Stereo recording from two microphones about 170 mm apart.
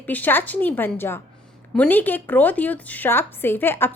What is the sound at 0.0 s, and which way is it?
A woman's voice, 10° left (ahead or behind).